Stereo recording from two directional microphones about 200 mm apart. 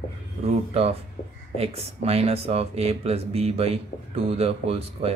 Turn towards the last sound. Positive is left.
turn(degrees=-30)  # may be behind; listen again after turning